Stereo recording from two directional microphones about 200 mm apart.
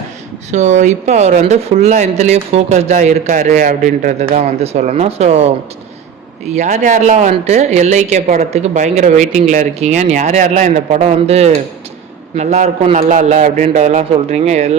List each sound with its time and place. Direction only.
0.5 s speech: 35° right (ahead or behind)
6.5 s speech: 35° right (ahead or behind)